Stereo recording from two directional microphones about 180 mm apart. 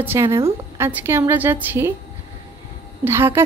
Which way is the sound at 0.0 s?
15° right (ahead or behind).